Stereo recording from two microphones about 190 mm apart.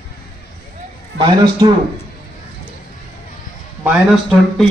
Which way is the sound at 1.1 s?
25° right (ahead or behind).